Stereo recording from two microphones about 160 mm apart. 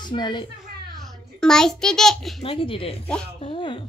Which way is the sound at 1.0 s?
5° left (ahead or behind).